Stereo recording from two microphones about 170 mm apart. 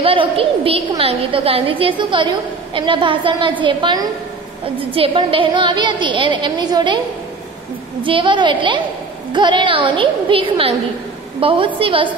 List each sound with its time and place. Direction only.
0.0 s a woman's voice: 30° right (ahead or behind)
8.0 s a woman's voice: 30° right (ahead or behind)